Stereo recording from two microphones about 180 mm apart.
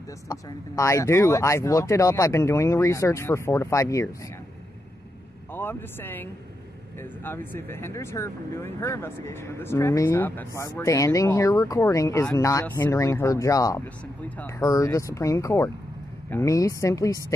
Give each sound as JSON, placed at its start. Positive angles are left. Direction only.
{"t": 0.3, "sound": "speech", "side_deg": 15}
{"t": 5.5, "sound": "speech", "side_deg": 10}